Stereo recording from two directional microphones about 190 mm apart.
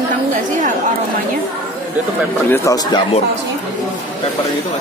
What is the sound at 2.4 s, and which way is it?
Speech, 15° left (ahead or behind).